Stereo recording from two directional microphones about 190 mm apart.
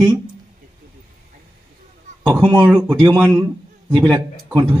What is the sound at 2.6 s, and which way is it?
A man's voice, 10° right (ahead or behind).